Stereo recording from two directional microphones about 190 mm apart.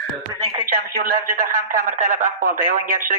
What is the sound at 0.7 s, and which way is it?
Speech, 45° right (ahead or behind).